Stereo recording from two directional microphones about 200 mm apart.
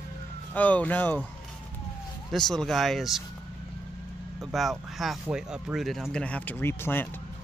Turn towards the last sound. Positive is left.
turn(degrees=10)  # may be behind; listen again after turning